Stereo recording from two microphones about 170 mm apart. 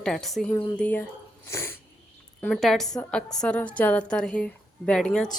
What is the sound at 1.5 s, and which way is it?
Sneeze, 15° left (ahead or behind).